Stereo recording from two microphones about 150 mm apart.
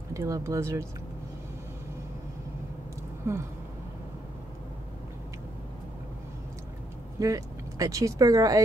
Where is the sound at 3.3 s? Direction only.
15° right (ahead or behind).